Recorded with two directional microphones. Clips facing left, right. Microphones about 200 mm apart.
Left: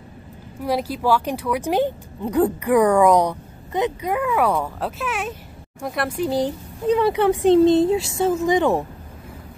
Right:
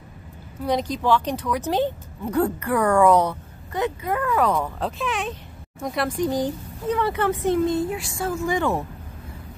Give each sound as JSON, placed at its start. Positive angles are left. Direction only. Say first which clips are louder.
{"t": 0.7, "sound": "a woman's voice", "louder": "left 1 dB", "side_deg": 5}